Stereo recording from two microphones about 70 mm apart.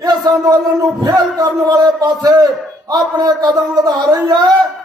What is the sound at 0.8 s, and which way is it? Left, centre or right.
A man's voice, right.